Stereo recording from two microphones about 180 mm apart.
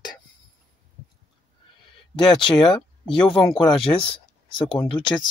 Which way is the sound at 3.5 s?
25° left (ahead or behind).